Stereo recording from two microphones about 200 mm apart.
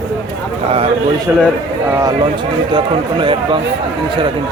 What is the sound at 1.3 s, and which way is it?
Speech, 5° right (ahead or behind).